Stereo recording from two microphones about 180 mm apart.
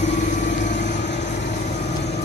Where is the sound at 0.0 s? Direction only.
40° left (ahead or behind).